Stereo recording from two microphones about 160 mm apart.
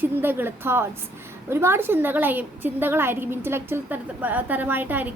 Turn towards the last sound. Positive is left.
turn(degrees=-10)  # may be behind; listen again after turning